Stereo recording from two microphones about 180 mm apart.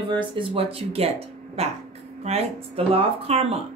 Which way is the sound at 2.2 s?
35° right (ahead or behind).